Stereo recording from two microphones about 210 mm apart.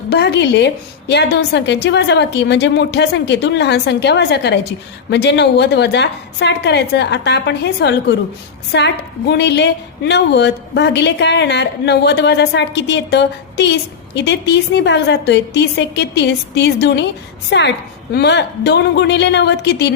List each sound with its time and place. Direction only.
0.1 s a woman's voice: 50° left (ahead or behind)